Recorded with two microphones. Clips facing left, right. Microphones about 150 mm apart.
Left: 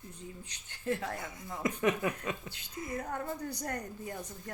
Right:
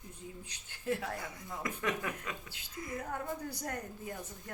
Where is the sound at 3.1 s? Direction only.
5° right (ahead or behind).